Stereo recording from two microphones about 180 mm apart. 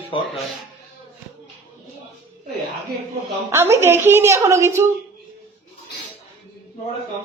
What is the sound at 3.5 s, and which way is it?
A woman's voice, 15° right (ahead or behind).